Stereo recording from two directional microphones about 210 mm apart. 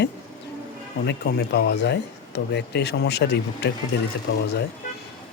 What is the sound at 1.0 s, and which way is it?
Speech, 50° left (ahead or behind).